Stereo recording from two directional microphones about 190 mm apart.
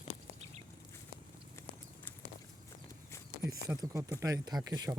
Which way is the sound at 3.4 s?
20° right (ahead or behind).